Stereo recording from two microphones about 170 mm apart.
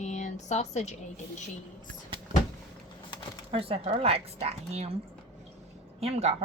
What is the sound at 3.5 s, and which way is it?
Speech, 35° right (ahead or behind).